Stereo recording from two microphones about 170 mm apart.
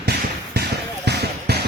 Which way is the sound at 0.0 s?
75° right (ahead or behind).